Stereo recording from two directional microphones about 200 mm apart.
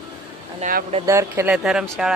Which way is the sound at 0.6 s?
45° right (ahead or behind).